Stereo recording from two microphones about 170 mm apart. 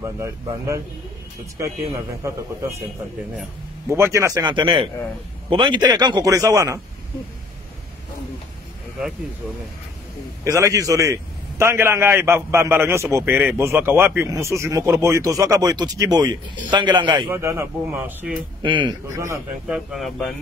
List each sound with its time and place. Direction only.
1.6 s a man's voice: 20° right (ahead or behind)
3.9 s a man's voice: 15° right (ahead or behind)
4.5 s a man's voice: 30° right (ahead or behind)
10.4 s a man's voice: 15° right (ahead or behind)
17.3 s a man's voice: 15° right (ahead or behind)
18.6 s a man's voice: 30° right (ahead or behind)
19.1 s a man's voice: 15° right (ahead or behind)
19.7 s speech: centre (ahead or behind)